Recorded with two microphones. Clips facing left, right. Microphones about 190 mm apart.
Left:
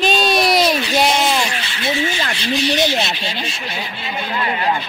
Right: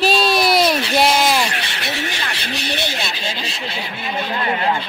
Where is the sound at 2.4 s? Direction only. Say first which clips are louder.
Left 9 dB; 55° right (ahead or behind).